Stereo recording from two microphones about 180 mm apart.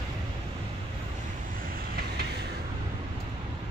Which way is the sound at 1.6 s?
55° right (ahead or behind).